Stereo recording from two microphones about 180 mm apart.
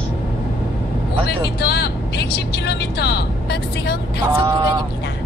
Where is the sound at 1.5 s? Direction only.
65° left (ahead or behind).